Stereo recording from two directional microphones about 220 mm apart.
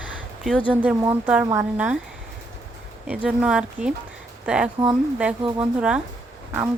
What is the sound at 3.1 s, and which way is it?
Speech, 5° right (ahead or behind).